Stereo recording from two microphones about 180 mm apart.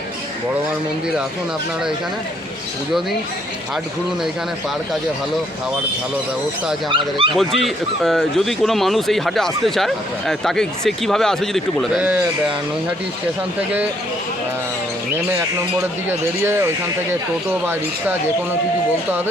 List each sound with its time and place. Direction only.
6.8 s speech: 25° right (ahead or behind)
7.3 s speech: centre (ahead or behind)
16.0 s speech: 15° right (ahead or behind)